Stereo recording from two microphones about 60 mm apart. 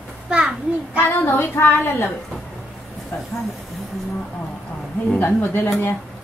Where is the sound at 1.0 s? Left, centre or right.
Left.